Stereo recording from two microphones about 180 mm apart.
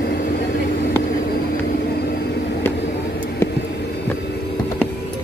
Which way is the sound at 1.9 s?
60° left (ahead or behind).